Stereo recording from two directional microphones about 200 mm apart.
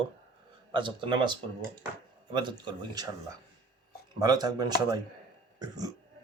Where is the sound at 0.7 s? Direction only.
25° right (ahead or behind).